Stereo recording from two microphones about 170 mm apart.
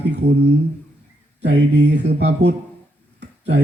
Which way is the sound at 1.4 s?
90° right.